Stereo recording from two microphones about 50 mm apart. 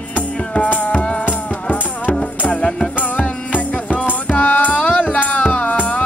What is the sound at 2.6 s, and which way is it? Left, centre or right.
Music, centre.